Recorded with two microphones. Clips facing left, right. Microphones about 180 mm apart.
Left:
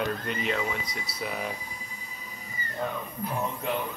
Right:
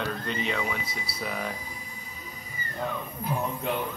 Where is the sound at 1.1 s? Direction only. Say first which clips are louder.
Even; 30° right (ahead or behind).